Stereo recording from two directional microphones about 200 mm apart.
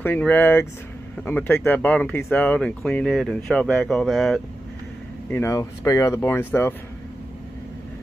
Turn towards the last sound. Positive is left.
turn(degrees=10)  # may be behind; listen again after turning